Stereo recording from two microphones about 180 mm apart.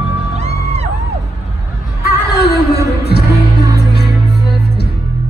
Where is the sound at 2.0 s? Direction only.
65° left (ahead or behind).